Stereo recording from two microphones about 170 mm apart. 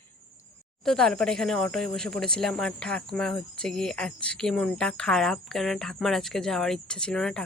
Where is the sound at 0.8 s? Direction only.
5° left (ahead or behind).